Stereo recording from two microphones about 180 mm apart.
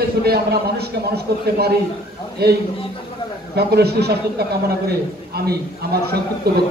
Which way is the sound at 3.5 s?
65° right (ahead or behind).